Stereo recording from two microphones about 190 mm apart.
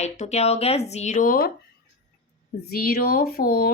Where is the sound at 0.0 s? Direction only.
35° left (ahead or behind).